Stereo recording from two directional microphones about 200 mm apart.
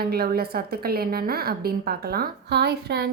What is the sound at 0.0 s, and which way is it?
A woman's voice, 50° right (ahead or behind).